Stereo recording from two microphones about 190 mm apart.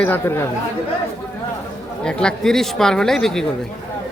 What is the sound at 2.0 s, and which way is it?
Speech, 5° left (ahead or behind).